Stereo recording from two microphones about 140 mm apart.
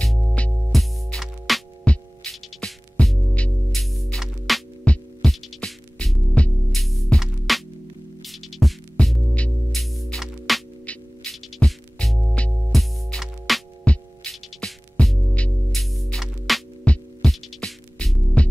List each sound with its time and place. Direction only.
0.0 s music: 5° left (ahead or behind)